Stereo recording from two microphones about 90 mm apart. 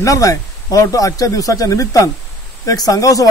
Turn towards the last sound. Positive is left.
turn(degrees=40)  # may be behind; listen again after turning